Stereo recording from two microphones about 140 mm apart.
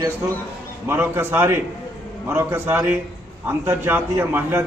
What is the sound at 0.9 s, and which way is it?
A man's voice, 15° right (ahead or behind).